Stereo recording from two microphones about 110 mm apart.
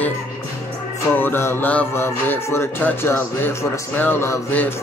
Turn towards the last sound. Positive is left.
turn(degrees=20)  # may be behind; listen again after turning